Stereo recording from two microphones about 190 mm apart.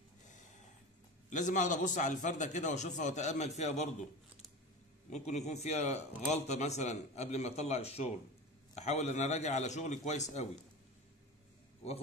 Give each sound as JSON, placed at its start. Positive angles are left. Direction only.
{"t": 1.3, "sound": "a man's voice", "side_deg": 40}
{"t": 5.1, "sound": "a man's voice", "side_deg": 35}